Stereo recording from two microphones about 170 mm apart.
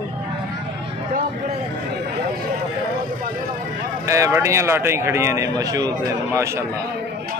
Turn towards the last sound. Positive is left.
turn(degrees=-15)  # may be behind; listen again after turning